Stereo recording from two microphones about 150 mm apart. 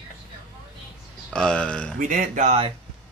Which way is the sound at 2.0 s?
60° right (ahead or behind).